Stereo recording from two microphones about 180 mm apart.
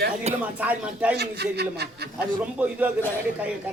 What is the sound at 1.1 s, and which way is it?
Speech, 65° right (ahead or behind).